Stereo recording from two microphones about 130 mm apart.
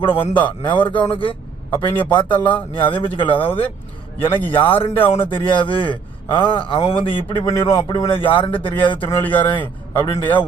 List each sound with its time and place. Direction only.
0.0 s a man's voice: 40° left (ahead or behind)
4.5 s a man's voice: 40° left (ahead or behind)
7.4 s a man's voice: 30° left (ahead or behind)
9.0 s a man's voice: 15° left (ahead or behind)